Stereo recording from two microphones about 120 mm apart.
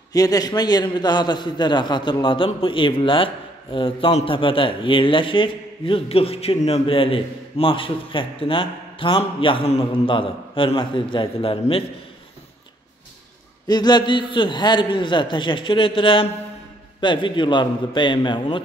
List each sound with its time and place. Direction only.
0.1 s a man's voice: 30° left (ahead or behind)
13.7 s a man's voice: 35° left (ahead or behind)